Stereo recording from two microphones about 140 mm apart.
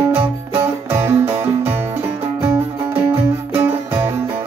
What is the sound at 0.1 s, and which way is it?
Music, 15° right (ahead or behind).